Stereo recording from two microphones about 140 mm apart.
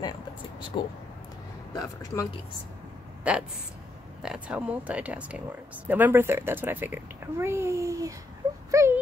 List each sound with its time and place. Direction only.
0.7 s speech: 35° left (ahead or behind)
1.8 s speech: 25° left (ahead or behind)
3.3 s a woman's voice: 10° right (ahead or behind)